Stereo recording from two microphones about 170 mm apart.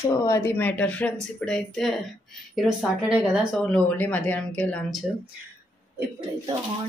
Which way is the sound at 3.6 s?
10° left (ahead or behind).